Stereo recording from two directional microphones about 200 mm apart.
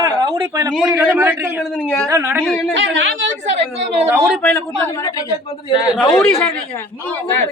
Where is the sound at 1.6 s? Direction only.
5° left (ahead or behind).